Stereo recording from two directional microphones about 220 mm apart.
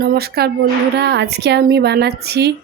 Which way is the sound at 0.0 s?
45° right (ahead or behind).